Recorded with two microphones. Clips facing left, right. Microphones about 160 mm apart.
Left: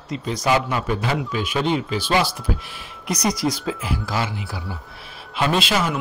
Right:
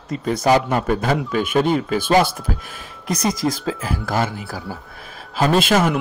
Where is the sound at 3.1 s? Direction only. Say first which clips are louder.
Right 1 dB; 25° right (ahead or behind).